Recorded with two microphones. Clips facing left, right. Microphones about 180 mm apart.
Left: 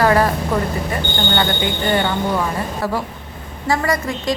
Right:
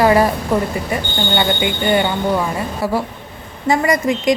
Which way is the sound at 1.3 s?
10° right (ahead or behind).